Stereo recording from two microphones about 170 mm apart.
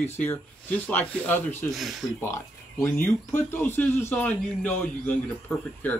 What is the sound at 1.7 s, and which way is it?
Speech, centre (ahead or behind).